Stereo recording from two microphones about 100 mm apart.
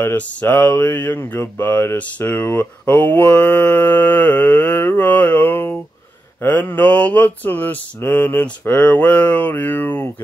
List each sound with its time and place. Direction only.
0.0 s speech: 20° left (ahead or behind)
6.4 s mantra: 20° left (ahead or behind)